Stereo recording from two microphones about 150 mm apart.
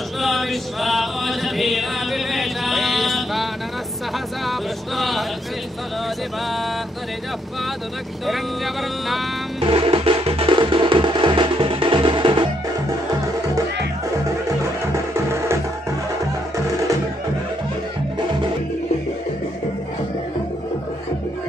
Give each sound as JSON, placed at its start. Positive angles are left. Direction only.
{"t": 0.2, "sound": "chant", "side_deg": 0}
{"t": 4.5, "sound": "speech", "side_deg": 0}
{"t": 9.6, "sound": "music", "side_deg": -35}
{"t": 15.1, "sound": "music", "side_deg": -15}